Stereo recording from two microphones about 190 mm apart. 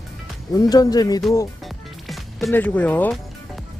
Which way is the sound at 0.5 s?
20° left (ahead or behind).